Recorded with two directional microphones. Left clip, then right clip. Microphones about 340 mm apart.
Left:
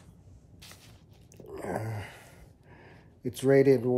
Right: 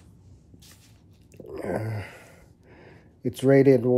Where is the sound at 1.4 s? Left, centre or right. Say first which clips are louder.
Right 5 dB; centre.